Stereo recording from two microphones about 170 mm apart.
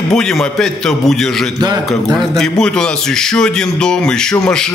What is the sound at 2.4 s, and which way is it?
Speech, 5° left (ahead or behind).